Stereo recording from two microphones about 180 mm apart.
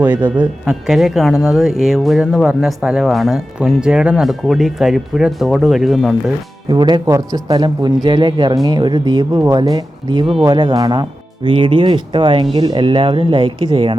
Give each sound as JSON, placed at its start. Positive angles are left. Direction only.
{"t": 0.0, "sound": "speech", "side_deg": -10}
{"t": 6.7, "sound": "speech", "side_deg": -25}